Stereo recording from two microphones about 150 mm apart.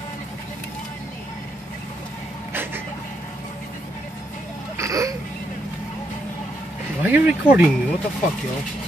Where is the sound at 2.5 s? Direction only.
15° right (ahead or behind).